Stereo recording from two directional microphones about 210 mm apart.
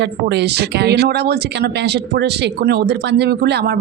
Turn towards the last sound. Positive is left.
turn(degrees=-50)  # may be behind; listen again after turning